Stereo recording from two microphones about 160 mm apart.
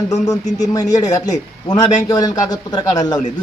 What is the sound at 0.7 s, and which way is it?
A man's voice, 20° left (ahead or behind).